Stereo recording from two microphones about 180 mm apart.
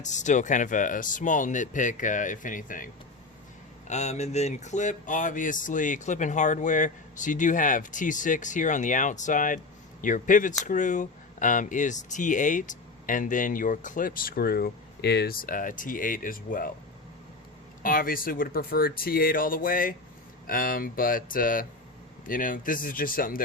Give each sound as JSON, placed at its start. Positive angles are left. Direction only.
{"t": 0.0, "sound": "speech", "side_deg": 40}
{"t": 17.8, "sound": "speech", "side_deg": 50}